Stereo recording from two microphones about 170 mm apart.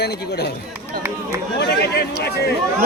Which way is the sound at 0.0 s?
75° left (ahead or behind).